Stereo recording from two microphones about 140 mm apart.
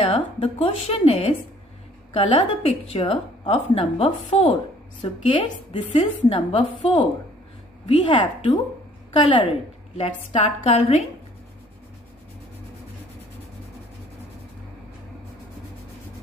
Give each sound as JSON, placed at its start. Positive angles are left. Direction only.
{"t": 0.0, "sound": "a woman's voice", "side_deg": 45}
{"t": 9.9, "sound": "a woman's voice", "side_deg": 50}